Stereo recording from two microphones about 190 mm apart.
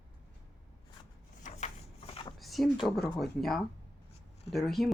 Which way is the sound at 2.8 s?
Centre (ahead or behind).